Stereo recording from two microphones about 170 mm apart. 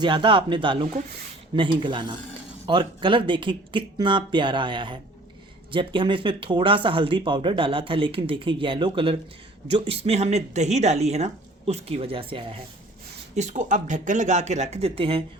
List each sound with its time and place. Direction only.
0.0 s speech: 30° right (ahead or behind)
13.3 s speech: 45° right (ahead or behind)